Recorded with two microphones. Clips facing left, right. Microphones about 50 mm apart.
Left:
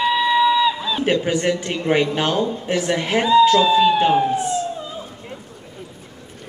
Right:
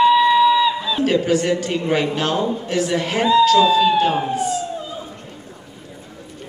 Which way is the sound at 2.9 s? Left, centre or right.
Left.